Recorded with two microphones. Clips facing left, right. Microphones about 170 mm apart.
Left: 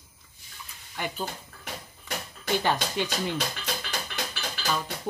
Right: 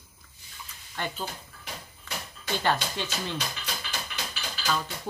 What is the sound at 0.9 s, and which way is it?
Speech, 10° left (ahead or behind).